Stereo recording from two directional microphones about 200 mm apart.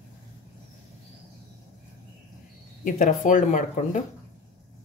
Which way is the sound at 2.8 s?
40° left (ahead or behind).